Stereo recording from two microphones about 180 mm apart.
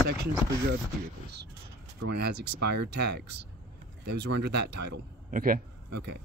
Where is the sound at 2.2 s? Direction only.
65° right (ahead or behind).